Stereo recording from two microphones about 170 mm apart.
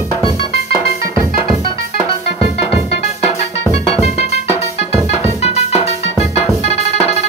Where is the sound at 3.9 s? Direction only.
40° left (ahead or behind).